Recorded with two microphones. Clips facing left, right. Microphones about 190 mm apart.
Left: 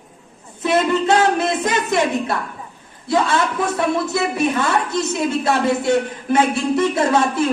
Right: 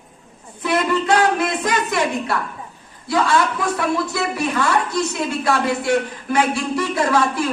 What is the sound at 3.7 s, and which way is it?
A man's voice, 20° left (ahead or behind).